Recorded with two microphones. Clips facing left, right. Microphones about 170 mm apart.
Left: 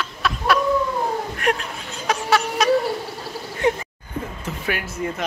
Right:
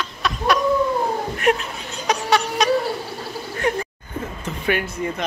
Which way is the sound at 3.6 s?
20° left (ahead or behind).